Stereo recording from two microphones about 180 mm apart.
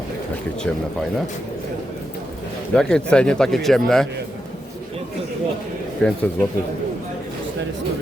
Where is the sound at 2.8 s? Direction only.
5° left (ahead or behind).